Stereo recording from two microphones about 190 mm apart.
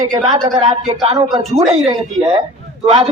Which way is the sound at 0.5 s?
35° right (ahead or behind).